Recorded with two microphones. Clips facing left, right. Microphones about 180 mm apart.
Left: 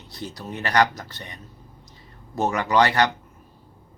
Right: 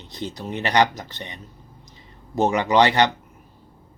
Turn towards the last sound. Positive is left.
turn(degrees=-20)  # may be behind; listen again after turning